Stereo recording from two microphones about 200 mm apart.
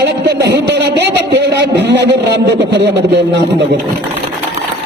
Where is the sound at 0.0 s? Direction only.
55° right (ahead or behind).